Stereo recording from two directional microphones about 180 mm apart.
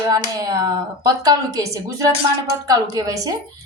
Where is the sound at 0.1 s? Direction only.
20° right (ahead or behind).